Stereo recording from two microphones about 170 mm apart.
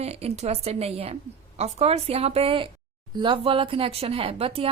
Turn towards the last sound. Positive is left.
turn(degrees=-35)  # may be behind; listen again after turning